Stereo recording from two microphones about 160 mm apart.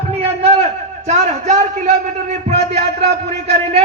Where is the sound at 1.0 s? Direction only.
45° right (ahead or behind).